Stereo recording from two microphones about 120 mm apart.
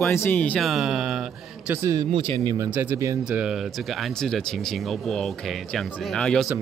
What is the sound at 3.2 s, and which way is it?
Speech, 5° right (ahead or behind).